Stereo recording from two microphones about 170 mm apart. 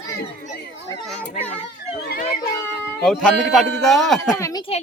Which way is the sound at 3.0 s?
5° left (ahead or behind).